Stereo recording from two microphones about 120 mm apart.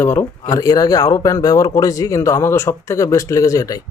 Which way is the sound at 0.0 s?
15° left (ahead or behind).